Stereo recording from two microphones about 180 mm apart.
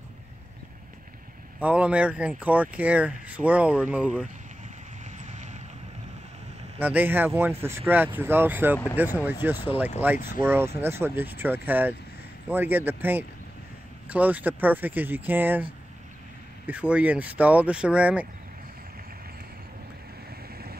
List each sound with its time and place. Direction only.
1.6 s speech: 5° right (ahead or behind)
5.0 s vehicle: 40° right (ahead or behind)
6.8 s speech: 10° right (ahead or behind)
16.6 s speech: 10° right (ahead or behind)